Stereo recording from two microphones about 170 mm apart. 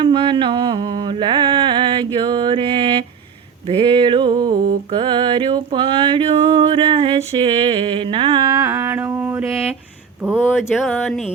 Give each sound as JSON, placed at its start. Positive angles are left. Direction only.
{"t": 0.0, "sound": "a sound", "side_deg": -25}
{"t": 2.1, "sound": "mantra", "side_deg": -25}
{"t": 3.7, "sound": "music", "side_deg": -30}
{"t": 10.2, "sound": "speech", "side_deg": -5}